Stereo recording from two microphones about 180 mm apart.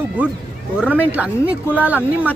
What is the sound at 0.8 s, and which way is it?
Speech, 10° right (ahead or behind).